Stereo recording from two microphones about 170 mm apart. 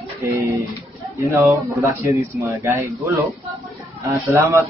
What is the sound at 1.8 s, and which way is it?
A man's voice, 15° right (ahead or behind).